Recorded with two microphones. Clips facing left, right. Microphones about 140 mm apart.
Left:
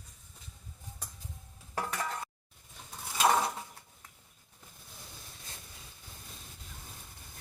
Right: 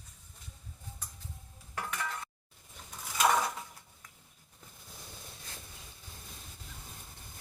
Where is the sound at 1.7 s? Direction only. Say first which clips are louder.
Left 3 dB; 35° left (ahead or behind).